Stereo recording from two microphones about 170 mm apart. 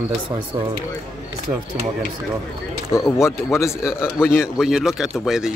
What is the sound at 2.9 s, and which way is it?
Speech, 15° left (ahead or behind).